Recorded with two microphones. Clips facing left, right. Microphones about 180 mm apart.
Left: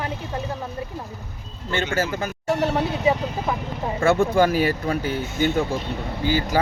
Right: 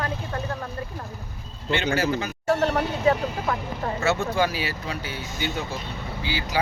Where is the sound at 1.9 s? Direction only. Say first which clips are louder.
Left 1 dB; 50° left (ahead or behind).